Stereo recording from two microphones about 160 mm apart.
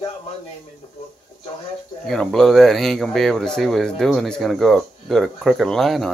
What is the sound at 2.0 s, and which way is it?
Speech, 5° left (ahead or behind).